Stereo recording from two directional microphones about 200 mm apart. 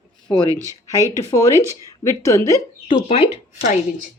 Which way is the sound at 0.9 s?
15° left (ahead or behind).